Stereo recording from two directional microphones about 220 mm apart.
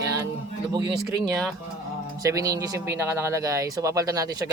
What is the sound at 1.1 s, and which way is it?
Speech, 15° right (ahead or behind).